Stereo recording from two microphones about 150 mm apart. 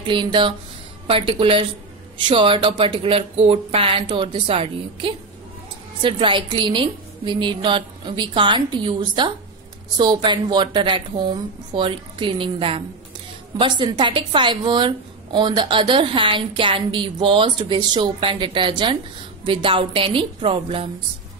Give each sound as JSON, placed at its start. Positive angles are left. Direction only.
{"t": 0.0, "sound": "a woman's voice", "side_deg": -30}